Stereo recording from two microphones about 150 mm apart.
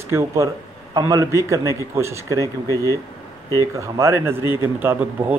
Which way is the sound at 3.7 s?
20° right (ahead or behind).